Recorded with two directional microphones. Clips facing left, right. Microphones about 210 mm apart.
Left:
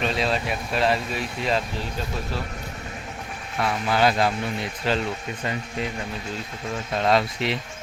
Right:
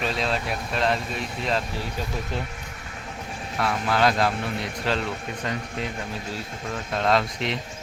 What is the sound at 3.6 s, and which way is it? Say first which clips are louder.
Speech: left 1 dB; centre (ahead or behind).